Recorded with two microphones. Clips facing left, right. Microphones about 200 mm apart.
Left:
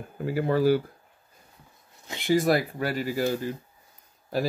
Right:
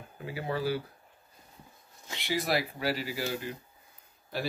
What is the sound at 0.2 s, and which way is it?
Speech, 45° left (ahead or behind).